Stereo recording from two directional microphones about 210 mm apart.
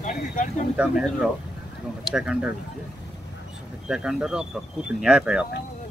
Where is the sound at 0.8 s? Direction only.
5° right (ahead or behind).